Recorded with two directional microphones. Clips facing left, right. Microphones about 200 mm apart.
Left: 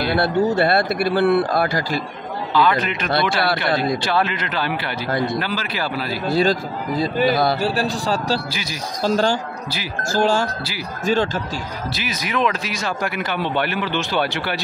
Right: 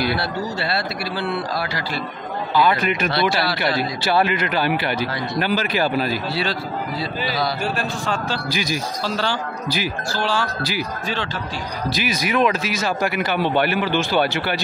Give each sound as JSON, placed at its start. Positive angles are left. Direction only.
{"t": 0.2, "sound": "speech", "side_deg": 55}
{"t": 2.5, "sound": "speech", "side_deg": -10}
{"t": 3.1, "sound": "speech", "side_deg": 50}
{"t": 4.0, "sound": "speech", "side_deg": -10}
{"t": 5.1, "sound": "speech", "side_deg": 50}
{"t": 5.4, "sound": "speech", "side_deg": -15}
{"t": 6.2, "sound": "speech", "side_deg": 45}
{"t": 7.6, "sound": "speech", "side_deg": 35}
{"t": 8.5, "sound": "speech", "side_deg": -15}
{"t": 9.0, "sound": "speech", "side_deg": 45}
{"t": 11.9, "sound": "speech", "side_deg": -10}